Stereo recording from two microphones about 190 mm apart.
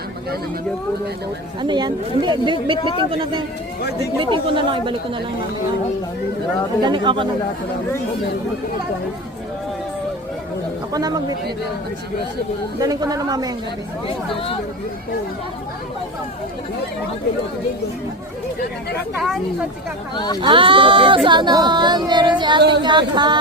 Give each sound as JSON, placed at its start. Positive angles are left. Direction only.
{"t": 1.6, "sound": "speech", "side_deg": -25}
{"t": 6.8, "sound": "speech", "side_deg": -25}
{"t": 10.9, "sound": "speech", "side_deg": -20}
{"t": 12.8, "sound": "speech", "side_deg": -20}
{"t": 20.1, "sound": "speech", "side_deg": 20}
{"t": 20.4, "sound": "speech", "side_deg": -25}